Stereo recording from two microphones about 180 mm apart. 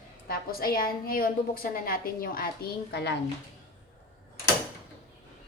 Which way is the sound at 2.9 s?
70° left (ahead or behind).